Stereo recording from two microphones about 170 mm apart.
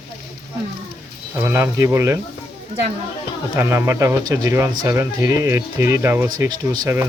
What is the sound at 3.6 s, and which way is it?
Speech, 15° right (ahead or behind).